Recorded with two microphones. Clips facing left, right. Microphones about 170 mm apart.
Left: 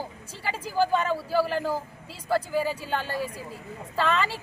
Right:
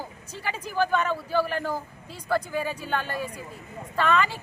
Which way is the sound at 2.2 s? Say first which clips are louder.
Left 2 dB; 30° left (ahead or behind).